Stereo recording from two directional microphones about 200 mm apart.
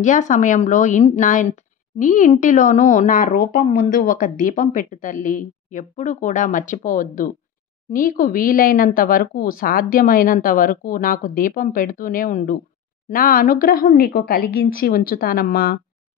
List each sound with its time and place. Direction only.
0.0 s a woman's voice: 40° left (ahead or behind)